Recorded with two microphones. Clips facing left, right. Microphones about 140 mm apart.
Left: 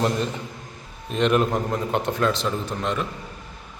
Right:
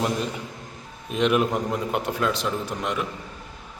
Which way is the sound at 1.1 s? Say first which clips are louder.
Left 1 dB; 5° right (ahead or behind).